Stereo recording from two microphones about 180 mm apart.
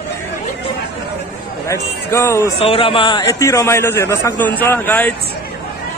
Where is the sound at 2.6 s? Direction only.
30° left (ahead or behind); by 5.1 s 10° left (ahead or behind).